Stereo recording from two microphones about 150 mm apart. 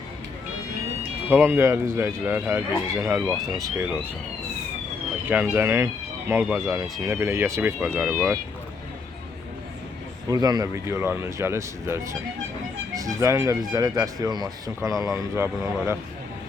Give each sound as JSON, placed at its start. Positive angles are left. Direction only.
{"t": 1.3, "sound": "speech", "side_deg": -15}
{"t": 5.2, "sound": "speech", "side_deg": -10}
{"t": 7.9, "sound": "speech", "side_deg": -5}
{"t": 10.2, "sound": "speech", "side_deg": -25}